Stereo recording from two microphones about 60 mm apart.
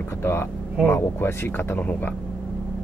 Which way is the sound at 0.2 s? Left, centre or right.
Left.